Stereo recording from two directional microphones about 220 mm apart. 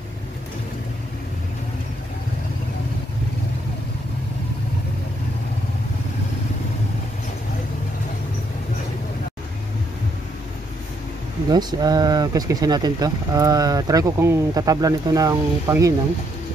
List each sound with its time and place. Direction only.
11.5 s speech: 20° right (ahead or behind)